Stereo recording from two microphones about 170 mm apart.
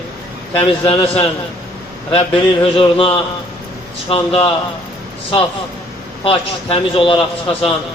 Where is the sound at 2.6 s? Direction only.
30° left (ahead or behind).